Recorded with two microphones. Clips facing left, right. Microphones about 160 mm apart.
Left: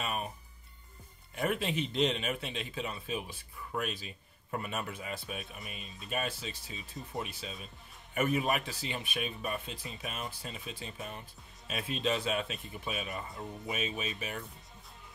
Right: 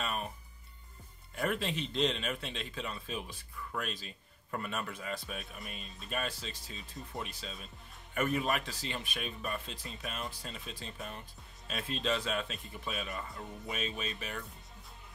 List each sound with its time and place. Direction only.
0.0 s music: 10° left (ahead or behind)
1.5 s speech: 10° left (ahead or behind)